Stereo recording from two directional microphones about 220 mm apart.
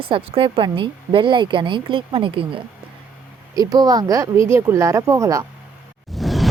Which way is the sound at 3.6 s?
15° right (ahead or behind).